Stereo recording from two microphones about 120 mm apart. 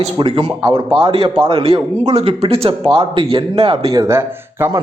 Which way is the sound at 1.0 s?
50° right (ahead or behind).